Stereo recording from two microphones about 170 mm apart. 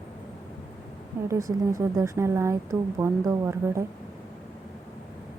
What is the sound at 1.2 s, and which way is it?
A woman's voice, 20° right (ahead or behind).